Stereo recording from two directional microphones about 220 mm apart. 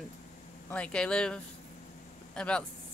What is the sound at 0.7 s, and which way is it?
A woman's voice, 5° left (ahead or behind).